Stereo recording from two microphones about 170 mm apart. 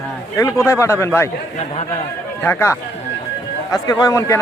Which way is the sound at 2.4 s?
15° left (ahead or behind).